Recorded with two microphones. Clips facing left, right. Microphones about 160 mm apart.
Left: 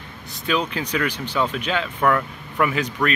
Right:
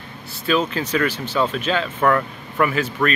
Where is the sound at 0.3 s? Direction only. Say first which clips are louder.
Right 3 dB; 15° left (ahead or behind).